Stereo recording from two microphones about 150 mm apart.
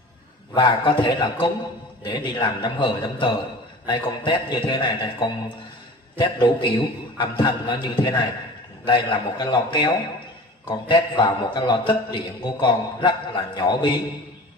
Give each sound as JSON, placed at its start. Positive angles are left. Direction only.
{"t": 0.6, "sound": "a man's voice", "side_deg": 30}